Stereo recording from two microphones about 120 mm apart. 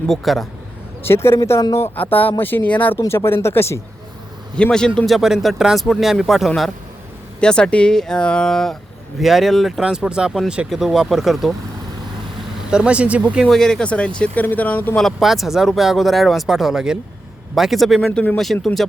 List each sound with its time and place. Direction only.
0.1 s speech: centre (ahead or behind)
1.0 s speech: 20° left (ahead or behind)
3.0 s speech: 25° left (ahead or behind)
4.5 s speech: 5° left (ahead or behind)
12.7 s speech: 10° right (ahead or behind)
13.5 s speech: 5° left (ahead or behind)
15.0 s speech: centre (ahead or behind)